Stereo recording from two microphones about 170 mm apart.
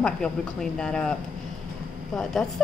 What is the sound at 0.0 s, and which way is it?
A woman's voice, 5° left (ahead or behind).